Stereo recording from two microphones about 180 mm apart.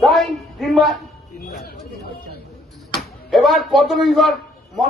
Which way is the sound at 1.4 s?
60° left (ahead or behind).